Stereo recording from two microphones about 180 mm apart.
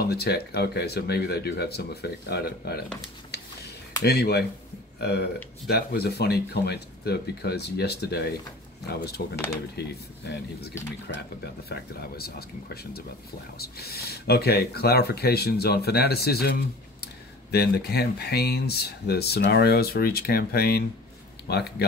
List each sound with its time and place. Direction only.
0.0 s speech: 65° left (ahead or behind)
4.0 s speech: 65° left (ahead or behind)
5.7 s speech: 60° left (ahead or behind)